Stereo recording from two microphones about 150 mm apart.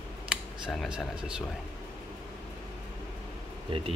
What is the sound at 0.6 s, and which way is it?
Speech, centre (ahead or behind).